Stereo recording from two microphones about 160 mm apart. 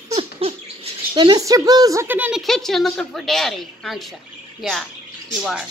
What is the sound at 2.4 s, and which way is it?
A woman's voice, centre (ahead or behind).